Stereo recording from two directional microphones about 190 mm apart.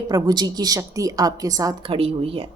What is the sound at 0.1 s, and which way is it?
Speech, 20° right (ahead or behind).